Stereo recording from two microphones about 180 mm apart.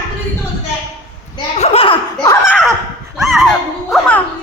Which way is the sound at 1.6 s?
35° left (ahead or behind).